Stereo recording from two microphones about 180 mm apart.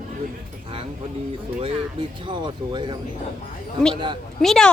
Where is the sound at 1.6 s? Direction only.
25° right (ahead or behind).